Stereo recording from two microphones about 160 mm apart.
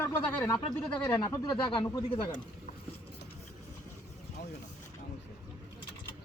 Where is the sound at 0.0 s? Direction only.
15° left (ahead or behind).